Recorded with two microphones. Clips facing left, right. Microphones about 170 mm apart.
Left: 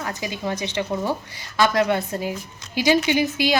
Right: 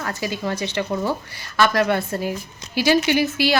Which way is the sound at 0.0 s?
15° left (ahead or behind).